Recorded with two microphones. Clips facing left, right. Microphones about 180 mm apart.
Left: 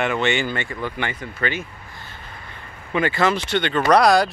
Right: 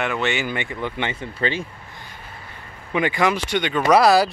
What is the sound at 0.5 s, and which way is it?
Speech, 15° right (ahead or behind).